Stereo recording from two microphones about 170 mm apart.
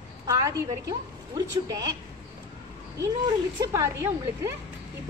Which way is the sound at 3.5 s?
20° right (ahead or behind).